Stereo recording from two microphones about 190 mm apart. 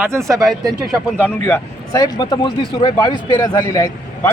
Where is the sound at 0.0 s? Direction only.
15° right (ahead or behind).